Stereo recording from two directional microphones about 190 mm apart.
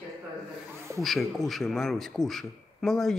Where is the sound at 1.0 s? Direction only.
Centre (ahead or behind).